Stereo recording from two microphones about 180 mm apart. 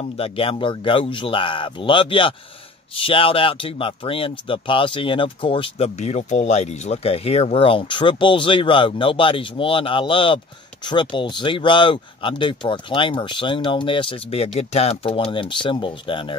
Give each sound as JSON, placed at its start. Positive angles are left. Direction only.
{"t": 0.0, "sound": "speech", "side_deg": 30}